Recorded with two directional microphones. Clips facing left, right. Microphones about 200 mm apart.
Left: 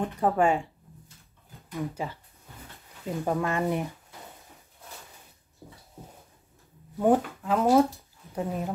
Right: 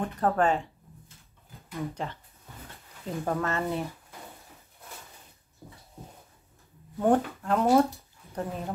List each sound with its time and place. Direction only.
0.0 s speech: 10° left (ahead or behind)
1.7 s speech: 10° left (ahead or behind)
3.3 s speech: 15° left (ahead or behind)
5.6 s a sound: 15° left (ahead or behind)
7.0 s speech: 5° left (ahead or behind)